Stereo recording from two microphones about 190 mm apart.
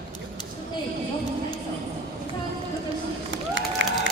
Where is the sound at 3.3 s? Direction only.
75° right (ahead or behind).